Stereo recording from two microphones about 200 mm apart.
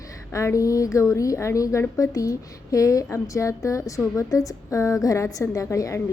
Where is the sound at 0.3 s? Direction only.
15° left (ahead or behind).